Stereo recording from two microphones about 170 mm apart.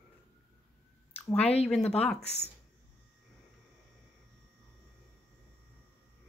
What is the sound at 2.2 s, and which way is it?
Speech, 40° left (ahead or behind).